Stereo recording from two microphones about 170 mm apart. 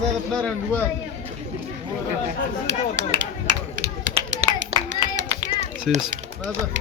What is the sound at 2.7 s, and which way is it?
Speech, 90° right.